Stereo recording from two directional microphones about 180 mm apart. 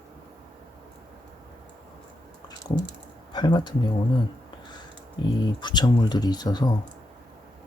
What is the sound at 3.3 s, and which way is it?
Speech, 25° left (ahead or behind).